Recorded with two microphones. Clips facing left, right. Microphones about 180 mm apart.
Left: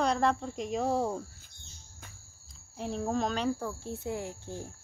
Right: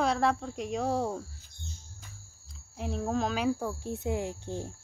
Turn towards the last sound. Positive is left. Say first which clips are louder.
# right 4 dB
turn(degrees=-20)  # may be behind; listen again after turning